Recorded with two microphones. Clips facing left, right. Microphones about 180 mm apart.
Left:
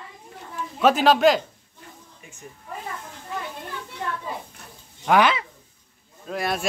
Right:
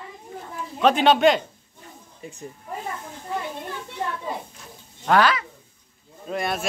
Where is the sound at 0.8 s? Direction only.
Centre (ahead or behind).